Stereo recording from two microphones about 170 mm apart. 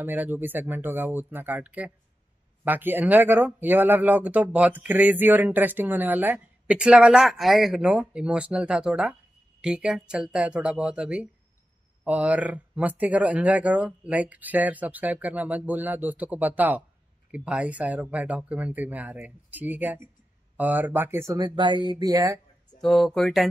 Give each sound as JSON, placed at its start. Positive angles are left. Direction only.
{"t": 0.0, "sound": "speech", "side_deg": -10}
{"t": 22.8, "sound": "speech", "side_deg": 0}